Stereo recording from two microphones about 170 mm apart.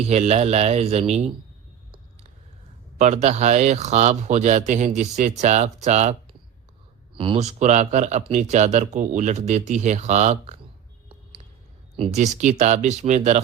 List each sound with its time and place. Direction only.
0.0 s speech: 40° right (ahead or behind)
3.0 s speech: 40° right (ahead or behind)
7.1 s speech: 30° right (ahead or behind)
11.9 s speech: 45° right (ahead or behind)